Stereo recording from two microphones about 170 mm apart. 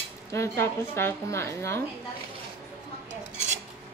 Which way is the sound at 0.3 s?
15° left (ahead or behind).